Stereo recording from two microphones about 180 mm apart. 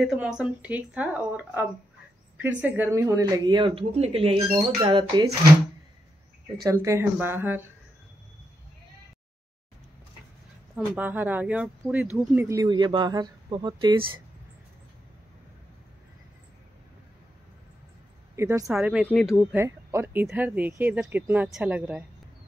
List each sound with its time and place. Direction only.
0.0 s speech: 5° right (ahead or behind); by 5.3 s 25° right (ahead or behind)
6.6 s speech: 15° right (ahead or behind)
11.0 s speech: 10° right (ahead or behind)
18.3 s speech: 15° right (ahead or behind)
18.7 s speech: 5° right (ahead or behind)
19.5 s speech: 15° right (ahead or behind)